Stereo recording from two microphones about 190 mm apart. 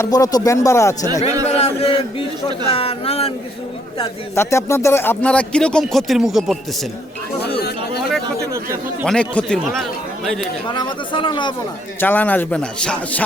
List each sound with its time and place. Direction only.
0.0 s a man's voice: 20° left (ahead or behind)
1.5 s chant: 35° left (ahead or behind)
2.6 s speech: 30° left (ahead or behind)
4.4 s speech: 15° left (ahead or behind); by 6.6 s centre (ahead or behind)
9.0 s speech: 5° left (ahead or behind)
10.7 s speech: 25° left (ahead or behind)
11.9 s a man's voice: 10° left (ahead or behind)